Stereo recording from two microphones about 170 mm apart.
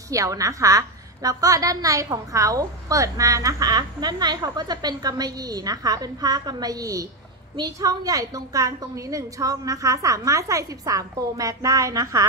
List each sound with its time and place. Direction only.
0.1 s a woman's voice: 20° right (ahead or behind)